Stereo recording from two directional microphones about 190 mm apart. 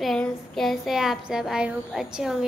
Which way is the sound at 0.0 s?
Centre (ahead or behind).